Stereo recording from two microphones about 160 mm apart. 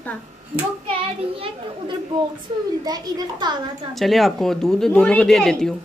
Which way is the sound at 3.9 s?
Centre (ahead or behind).